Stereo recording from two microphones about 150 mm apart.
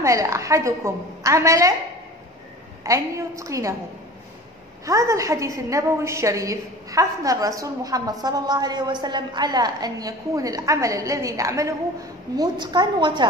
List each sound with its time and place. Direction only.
0.0 s a woman's voice: 20° right (ahead or behind)
2.8 s a woman's voice: 20° right (ahead or behind)
4.8 s a woman's voice: 20° right (ahead or behind)